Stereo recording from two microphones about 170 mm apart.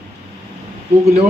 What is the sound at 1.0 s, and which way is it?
Speech, 40° right (ahead or behind).